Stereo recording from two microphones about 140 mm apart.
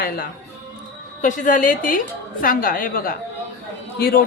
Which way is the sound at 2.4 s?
85° left.